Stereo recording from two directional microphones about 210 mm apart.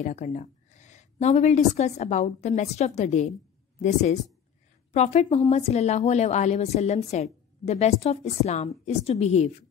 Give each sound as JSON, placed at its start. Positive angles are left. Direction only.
{"t": 0.0, "sound": "a woman's voice", "side_deg": 35}